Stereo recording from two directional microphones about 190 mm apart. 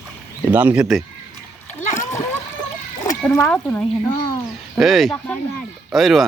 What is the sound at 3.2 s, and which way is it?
Speech, 5° left (ahead or behind).